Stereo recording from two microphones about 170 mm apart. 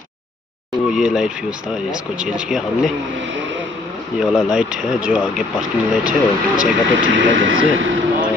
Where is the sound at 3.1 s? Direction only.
90° right.